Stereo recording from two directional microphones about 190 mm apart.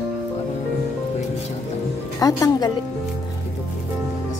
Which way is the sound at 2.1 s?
20° left (ahead or behind).